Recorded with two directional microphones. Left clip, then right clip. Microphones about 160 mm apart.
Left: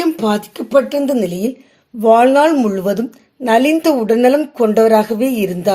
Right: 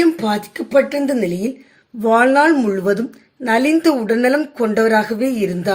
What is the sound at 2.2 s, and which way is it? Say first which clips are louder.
A woman's voice: left 2 dB; 30° left (ahead or behind).